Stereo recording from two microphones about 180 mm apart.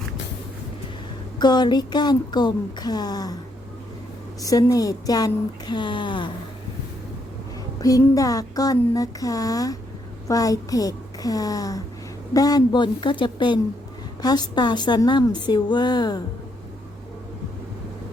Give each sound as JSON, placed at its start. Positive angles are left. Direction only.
{"t": 1.4, "sound": "speech", "side_deg": 25}
{"t": 4.4, "sound": "speech", "side_deg": 20}
{"t": 7.8, "sound": "speech", "side_deg": 20}